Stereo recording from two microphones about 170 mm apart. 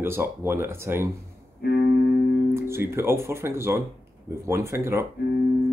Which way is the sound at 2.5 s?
15° right (ahead or behind).